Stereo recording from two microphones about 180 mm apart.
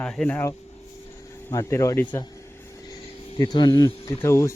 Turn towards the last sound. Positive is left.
turn(degrees=15)  # may be behind; listen again after turning